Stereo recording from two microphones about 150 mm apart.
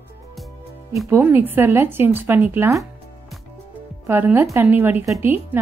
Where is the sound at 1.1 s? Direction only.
15° right (ahead or behind).